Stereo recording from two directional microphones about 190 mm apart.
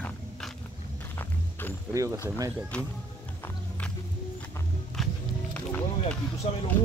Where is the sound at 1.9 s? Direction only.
15° right (ahead or behind).